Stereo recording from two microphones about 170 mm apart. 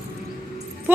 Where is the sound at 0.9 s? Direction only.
10° right (ahead or behind).